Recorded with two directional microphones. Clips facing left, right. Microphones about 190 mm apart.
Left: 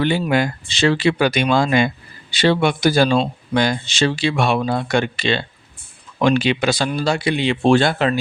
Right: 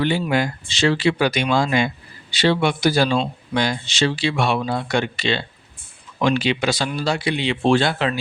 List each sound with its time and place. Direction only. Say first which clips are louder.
0.0 s speech: left 2 dB; 60° left (ahead or behind)